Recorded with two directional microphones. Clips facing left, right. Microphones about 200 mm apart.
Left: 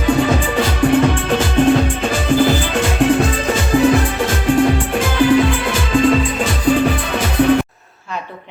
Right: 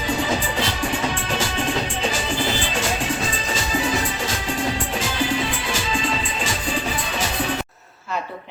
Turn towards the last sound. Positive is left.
turn(degrees=55)  # may be behind; listen again after turning